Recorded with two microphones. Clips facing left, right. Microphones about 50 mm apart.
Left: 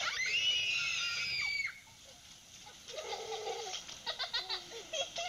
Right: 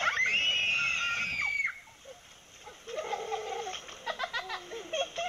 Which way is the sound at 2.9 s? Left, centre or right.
Right.